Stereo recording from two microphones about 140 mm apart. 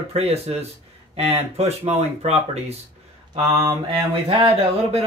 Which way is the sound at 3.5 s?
20° right (ahead or behind).